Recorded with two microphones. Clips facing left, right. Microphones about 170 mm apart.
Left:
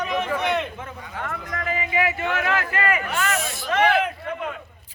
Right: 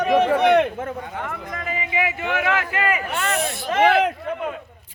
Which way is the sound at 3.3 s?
60° right (ahead or behind).